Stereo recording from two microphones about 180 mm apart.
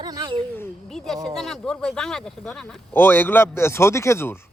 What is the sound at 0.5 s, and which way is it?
Speech, 5° left (ahead or behind).